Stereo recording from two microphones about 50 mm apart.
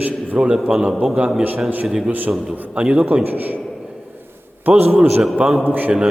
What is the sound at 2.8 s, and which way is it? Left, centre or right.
Speech, right.